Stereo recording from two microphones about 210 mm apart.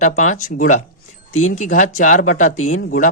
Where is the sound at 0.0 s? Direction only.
35° left (ahead or behind).